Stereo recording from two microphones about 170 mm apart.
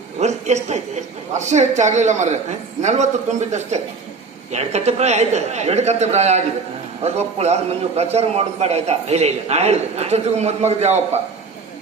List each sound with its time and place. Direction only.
0.2 s a woman's voice: 40° right (ahead or behind)